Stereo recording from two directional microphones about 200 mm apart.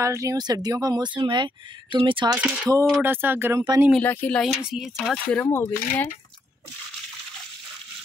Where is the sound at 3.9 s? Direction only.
5° left (ahead or behind).